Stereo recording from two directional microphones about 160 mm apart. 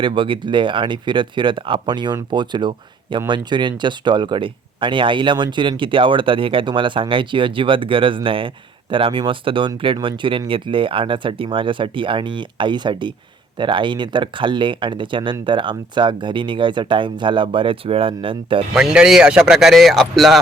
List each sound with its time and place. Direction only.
0.0 s speech: 30° right (ahead or behind)
18.7 s speech: 5° right (ahead or behind)